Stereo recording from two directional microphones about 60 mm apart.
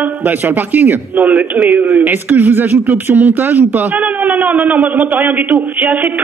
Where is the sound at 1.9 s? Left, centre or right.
Right.